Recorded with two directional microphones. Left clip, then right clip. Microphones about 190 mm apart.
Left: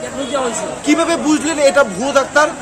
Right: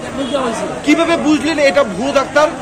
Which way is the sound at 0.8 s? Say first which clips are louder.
Right 2 dB; 55° left (ahead or behind).